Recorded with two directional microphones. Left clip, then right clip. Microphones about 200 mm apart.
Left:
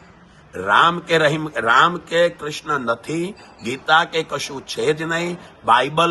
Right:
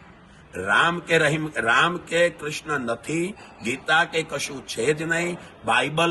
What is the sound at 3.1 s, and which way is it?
Speech, 35° left (ahead or behind).